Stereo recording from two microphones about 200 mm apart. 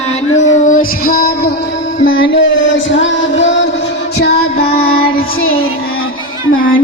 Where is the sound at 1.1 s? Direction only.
50° left (ahead or behind).